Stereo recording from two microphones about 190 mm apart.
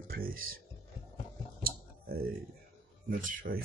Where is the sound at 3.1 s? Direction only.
45° right (ahead or behind).